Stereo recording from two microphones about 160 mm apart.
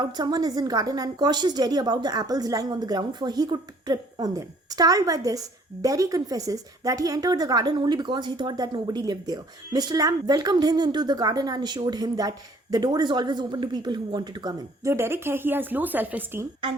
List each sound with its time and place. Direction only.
0.0 s a woman's voice: 25° right (ahead or behind)